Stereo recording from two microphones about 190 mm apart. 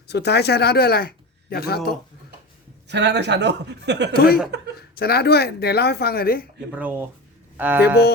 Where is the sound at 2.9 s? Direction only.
65° right (ahead or behind).